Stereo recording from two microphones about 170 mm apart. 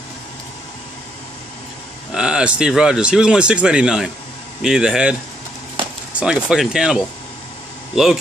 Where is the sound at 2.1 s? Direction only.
5° right (ahead or behind).